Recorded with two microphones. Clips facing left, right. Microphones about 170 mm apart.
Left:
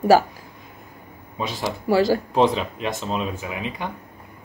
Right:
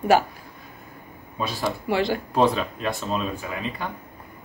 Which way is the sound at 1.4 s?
20° left (ahead or behind).